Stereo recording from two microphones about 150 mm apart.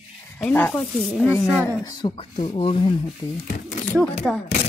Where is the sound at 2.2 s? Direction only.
40° left (ahead or behind).